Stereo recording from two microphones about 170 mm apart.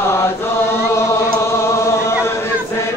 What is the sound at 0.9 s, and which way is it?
Chant, 15° left (ahead or behind).